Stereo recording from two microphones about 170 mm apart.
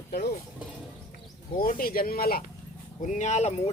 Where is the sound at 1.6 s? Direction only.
55° left (ahead or behind).